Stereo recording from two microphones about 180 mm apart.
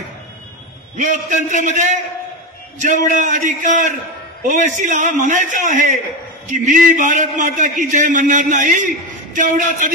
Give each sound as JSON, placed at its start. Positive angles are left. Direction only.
{"t": 0.9, "sound": "a man's voice", "side_deg": -40}